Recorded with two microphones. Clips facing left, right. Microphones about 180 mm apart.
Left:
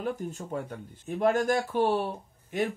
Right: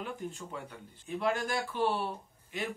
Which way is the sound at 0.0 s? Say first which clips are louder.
Left 6 dB; 40° left (ahead or behind).